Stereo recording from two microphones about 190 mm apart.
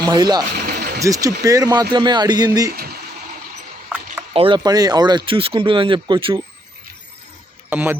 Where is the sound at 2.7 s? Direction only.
55° right (ahead or behind).